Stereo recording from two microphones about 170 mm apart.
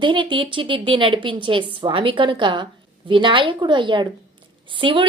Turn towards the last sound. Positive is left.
turn(degrees=-30)  # may be behind; listen again after turning